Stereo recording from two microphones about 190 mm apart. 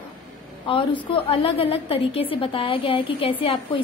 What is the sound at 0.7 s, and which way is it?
A woman's voice, 25° left (ahead or behind).